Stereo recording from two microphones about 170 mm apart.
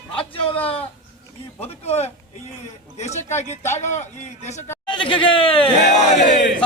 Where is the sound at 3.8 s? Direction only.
45° left (ahead or behind).